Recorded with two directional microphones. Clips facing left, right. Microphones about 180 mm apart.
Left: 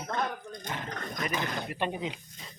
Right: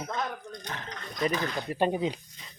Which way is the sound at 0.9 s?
50° left (ahead or behind).